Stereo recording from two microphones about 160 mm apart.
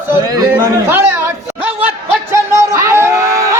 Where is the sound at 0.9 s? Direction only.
15° right (ahead or behind).